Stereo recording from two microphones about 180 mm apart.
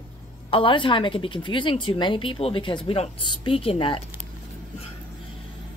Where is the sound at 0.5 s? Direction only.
30° left (ahead or behind).